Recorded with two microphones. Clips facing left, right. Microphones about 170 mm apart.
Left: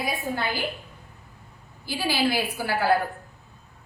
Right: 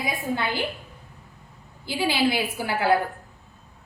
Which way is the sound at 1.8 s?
20° right (ahead or behind).